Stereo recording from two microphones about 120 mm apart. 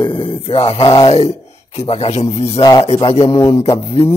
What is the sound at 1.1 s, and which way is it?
A man's voice, 60° left (ahead or behind).